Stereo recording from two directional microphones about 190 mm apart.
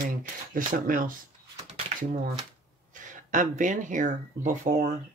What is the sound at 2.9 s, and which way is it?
Speech, 40° right (ahead or behind).